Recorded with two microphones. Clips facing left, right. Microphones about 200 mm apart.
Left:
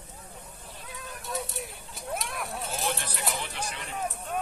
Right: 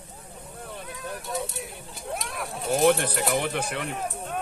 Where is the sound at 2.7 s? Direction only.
60° right (ahead or behind).